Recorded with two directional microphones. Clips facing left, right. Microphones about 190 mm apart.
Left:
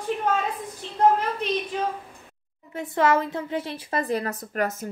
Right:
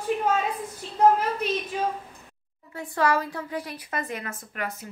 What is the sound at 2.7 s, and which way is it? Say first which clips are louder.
A woman's voice: left 3 dB; 20° left (ahead or behind).